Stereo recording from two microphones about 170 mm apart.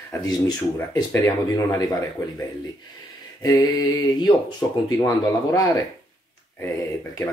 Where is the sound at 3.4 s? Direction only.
25° left (ahead or behind).